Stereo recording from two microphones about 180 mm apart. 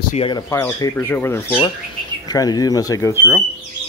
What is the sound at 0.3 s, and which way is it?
Speech, 15° left (ahead or behind).